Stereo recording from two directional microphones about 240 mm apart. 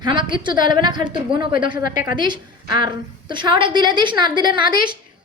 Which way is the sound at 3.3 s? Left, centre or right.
Centre.